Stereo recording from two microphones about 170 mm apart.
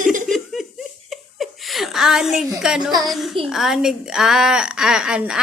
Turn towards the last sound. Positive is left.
turn(degrees=-5)  # may be behind; listen again after turning